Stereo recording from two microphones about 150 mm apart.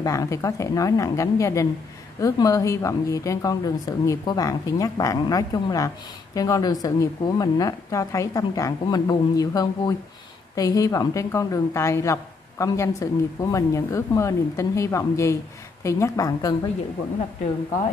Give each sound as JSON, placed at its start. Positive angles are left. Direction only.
{"t": 0.0, "sound": "a woman's voice", "side_deg": 20}